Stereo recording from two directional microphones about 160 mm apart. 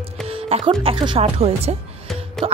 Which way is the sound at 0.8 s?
35° right (ahead or behind).